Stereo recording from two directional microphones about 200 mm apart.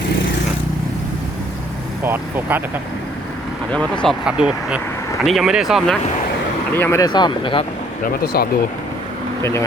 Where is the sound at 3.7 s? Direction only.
5° left (ahead or behind).